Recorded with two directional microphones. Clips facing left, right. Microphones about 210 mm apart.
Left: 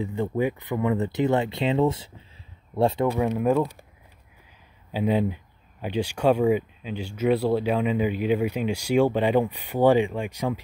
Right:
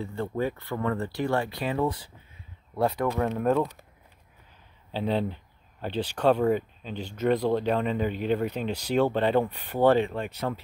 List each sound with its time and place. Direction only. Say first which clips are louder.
0.0 s speech: left 4 dB; 15° left (ahead or behind)
3.1 s speech: left 3 dB; 10° left (ahead or behind)
4.9 s speech: left 4 dB; 10° left (ahead or behind)